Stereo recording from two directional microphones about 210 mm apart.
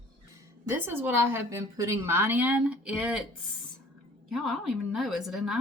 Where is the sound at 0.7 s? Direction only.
10° right (ahead or behind).